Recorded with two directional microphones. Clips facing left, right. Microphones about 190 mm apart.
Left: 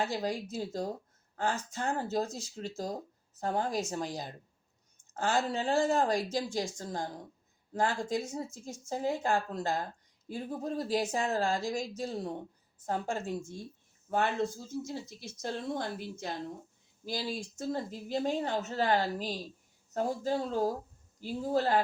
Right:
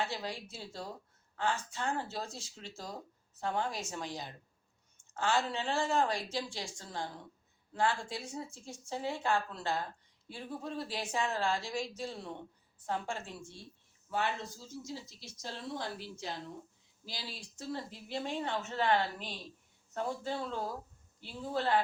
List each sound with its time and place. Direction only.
0.0 s speech: 40° left (ahead or behind)